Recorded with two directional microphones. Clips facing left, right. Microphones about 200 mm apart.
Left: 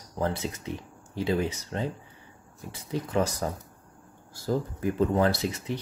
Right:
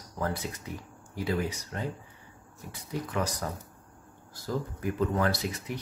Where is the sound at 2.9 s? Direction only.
25° left (ahead or behind).